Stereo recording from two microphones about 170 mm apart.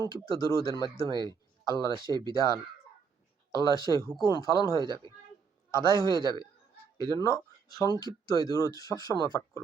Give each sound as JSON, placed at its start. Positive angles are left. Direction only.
{"t": 0.0, "sound": "speech", "side_deg": 20}
{"t": 1.1, "sound": "speech", "side_deg": -25}
{"t": 1.6, "sound": "speech", "side_deg": 20}